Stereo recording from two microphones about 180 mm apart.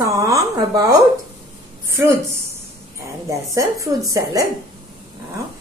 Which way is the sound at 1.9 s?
15° right (ahead or behind).